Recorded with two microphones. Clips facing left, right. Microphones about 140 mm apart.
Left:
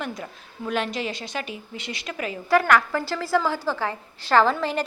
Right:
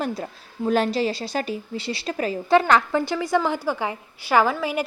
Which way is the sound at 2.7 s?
20° right (ahead or behind).